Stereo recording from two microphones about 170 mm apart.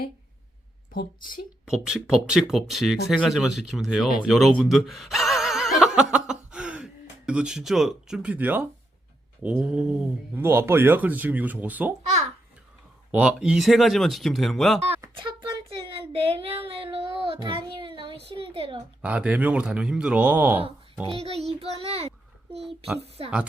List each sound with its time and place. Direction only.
0.9 s a woman's voice: 55° left (ahead or behind)
1.6 s speech: 5° right (ahead or behind)
5.8 s chuckle: 5° right (ahead or behind)
9.4 s speech: 10° right (ahead or behind)
13.1 s speech: 5° right (ahead or behind)
15.0 s a sound: 25° right (ahead or behind)
15.9 s child singing: 35° right (ahead or behind)
18.3 s a sound: 35° right (ahead or behind)
19.0 s speech: 5° right (ahead or behind)
21.1 s child singing: 35° right (ahead or behind)
23.0 s speech: 35° right (ahead or behind)